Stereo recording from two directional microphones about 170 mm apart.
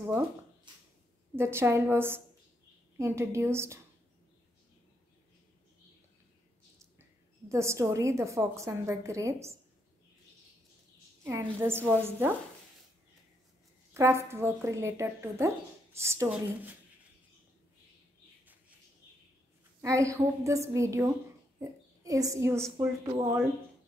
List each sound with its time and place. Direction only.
1.3 s speech: 15° right (ahead or behind)
7.0 s a woman's voice: 15° right (ahead or behind)
11.6 s speech: 10° right (ahead or behind)
13.9 s speech: 15° right (ahead or behind)
19.8 s a woman's voice: 20° right (ahead or behind)